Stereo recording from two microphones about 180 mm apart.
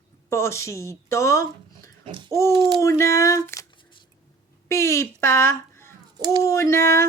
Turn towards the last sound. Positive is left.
turn(degrees=15)  # may be behind; listen again after turning